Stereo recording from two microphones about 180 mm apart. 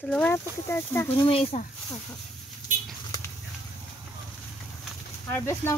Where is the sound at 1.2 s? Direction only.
30° left (ahead or behind).